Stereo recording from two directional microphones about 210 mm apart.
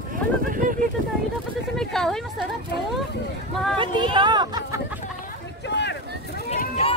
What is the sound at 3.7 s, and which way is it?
Speech, 20° right (ahead or behind).